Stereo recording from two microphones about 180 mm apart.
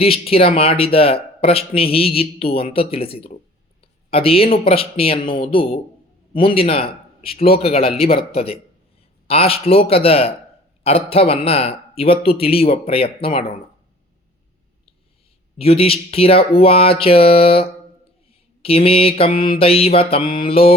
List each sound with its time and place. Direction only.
0.0 s speech: 30° left (ahead or behind)
15.5 s speech: 35° left (ahead or behind)